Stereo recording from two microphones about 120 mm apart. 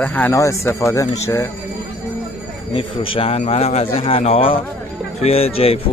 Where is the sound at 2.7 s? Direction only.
45° left (ahead or behind).